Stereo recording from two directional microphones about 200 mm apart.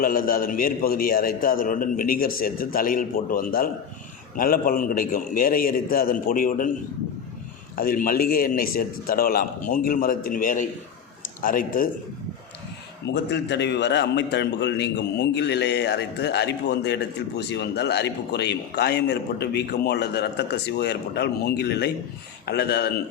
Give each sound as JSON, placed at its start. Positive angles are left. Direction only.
{"t": 0.0, "sound": "a man's voice", "side_deg": 45}
{"t": 7.8, "sound": "a man's voice", "side_deg": 45}
{"t": 13.3, "sound": "a man's voice", "side_deg": 60}